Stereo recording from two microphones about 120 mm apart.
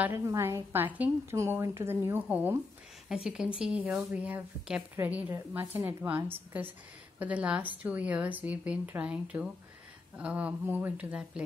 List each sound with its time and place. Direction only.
0.0 s speech: 20° right (ahead or behind)